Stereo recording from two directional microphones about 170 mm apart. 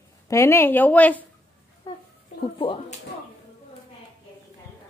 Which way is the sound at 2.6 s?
30° left (ahead or behind).